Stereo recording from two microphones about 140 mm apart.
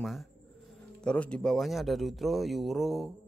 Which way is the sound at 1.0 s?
5° left (ahead or behind).